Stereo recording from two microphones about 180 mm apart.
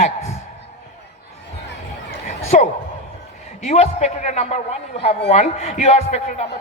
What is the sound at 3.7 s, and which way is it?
A woman's voice, 35° left (ahead or behind).